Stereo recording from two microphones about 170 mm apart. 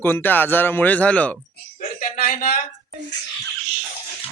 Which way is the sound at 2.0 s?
60° left (ahead or behind).